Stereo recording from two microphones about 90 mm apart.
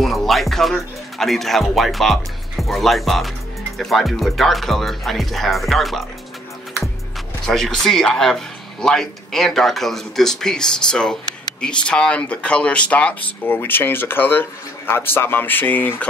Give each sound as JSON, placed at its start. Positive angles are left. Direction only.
{"t": 0.0, "sound": "speech", "side_deg": 0}
{"t": 7.4, "sound": "speech", "side_deg": 5}